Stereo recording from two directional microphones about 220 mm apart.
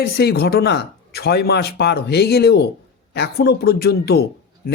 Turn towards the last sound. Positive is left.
turn(degrees=45)  # may be behind; listen again after turning